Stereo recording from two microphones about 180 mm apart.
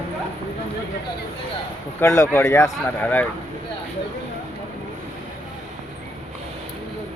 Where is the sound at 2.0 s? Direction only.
15° left (ahead or behind).